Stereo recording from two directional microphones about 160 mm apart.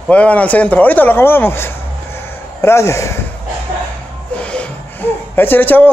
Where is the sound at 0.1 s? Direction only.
10° left (ahead or behind).